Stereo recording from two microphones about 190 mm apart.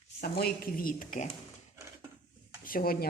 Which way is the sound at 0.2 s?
50° left (ahead or behind).